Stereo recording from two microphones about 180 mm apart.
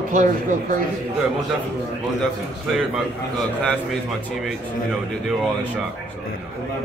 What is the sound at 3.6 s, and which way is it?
A man's voice, 5° left (ahead or behind).